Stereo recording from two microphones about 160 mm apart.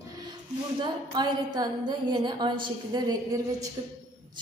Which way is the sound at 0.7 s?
30° right (ahead or behind).